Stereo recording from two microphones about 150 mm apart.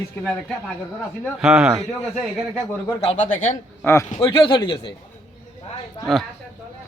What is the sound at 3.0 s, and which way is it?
Speech, 40° left (ahead or behind).